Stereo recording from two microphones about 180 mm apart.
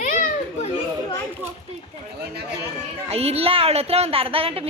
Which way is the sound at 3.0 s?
35° right (ahead or behind).